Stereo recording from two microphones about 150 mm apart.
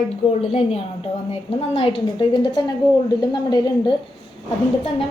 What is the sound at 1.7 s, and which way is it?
A woman's voice, 35° left (ahead or behind).